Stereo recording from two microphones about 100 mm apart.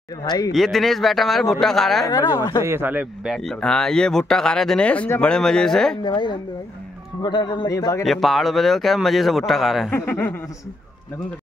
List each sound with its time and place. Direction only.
0.2 s a man's voice: 40° left (ahead or behind)
0.5 s speech: centre (ahead or behind)
2.0 s a man's voice: 35° left (ahead or behind)
2.6 s a man's voice: 25° right (ahead or behind)
3.3 s speech: 5° left (ahead or behind)
6.0 s speech: 50° left (ahead or behind)
7.7 s a man's voice: 30° left (ahead or behind)
8.0 s speech: centre (ahead or behind)
9.8 s speech: 20° left (ahead or behind)